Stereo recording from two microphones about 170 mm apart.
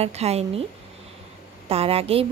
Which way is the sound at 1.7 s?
35° right (ahead or behind).